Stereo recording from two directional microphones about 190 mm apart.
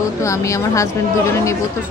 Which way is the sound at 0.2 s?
15° left (ahead or behind).